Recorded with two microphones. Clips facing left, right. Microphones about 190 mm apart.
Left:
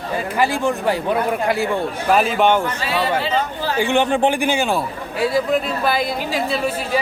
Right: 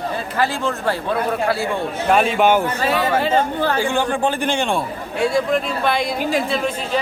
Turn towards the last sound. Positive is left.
turn(degrees=5)  # may be behind; listen again after turning